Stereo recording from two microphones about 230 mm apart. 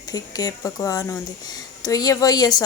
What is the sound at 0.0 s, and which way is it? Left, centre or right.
Speech, centre.